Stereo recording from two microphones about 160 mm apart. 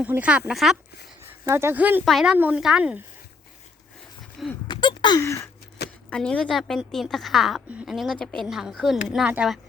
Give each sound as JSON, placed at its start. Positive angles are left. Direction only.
{"t": 0.0, "sound": "speech", "side_deg": -10}
{"t": 1.3, "sound": "a woman's voice", "side_deg": -15}
{"t": 4.4, "sound": "speech", "side_deg": 0}
{"t": 4.7, "sound": "speech", "side_deg": 25}
{"t": 6.1, "sound": "a woman's voice", "side_deg": 5}